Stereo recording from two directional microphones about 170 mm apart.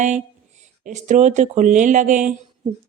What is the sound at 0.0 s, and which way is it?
Speech, 45° right (ahead or behind).